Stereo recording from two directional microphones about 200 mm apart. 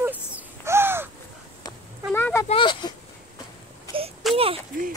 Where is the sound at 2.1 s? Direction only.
10° left (ahead or behind).